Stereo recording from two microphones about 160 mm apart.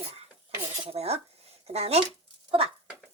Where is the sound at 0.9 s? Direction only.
40° right (ahead or behind).